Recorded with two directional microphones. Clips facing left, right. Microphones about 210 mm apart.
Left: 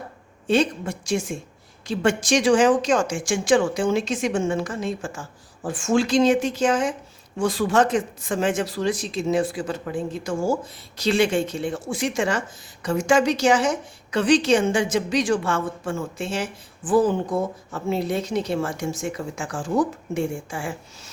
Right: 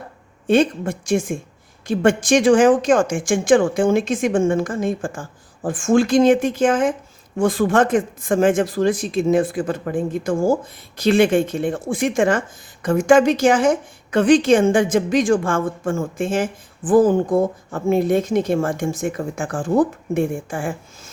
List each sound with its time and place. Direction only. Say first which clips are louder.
0.4 s a woman's voice: right 4 dB; 55° right (ahead or behind)